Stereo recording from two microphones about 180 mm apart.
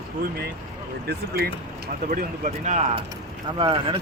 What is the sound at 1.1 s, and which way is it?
Speech, 65° right (ahead or behind).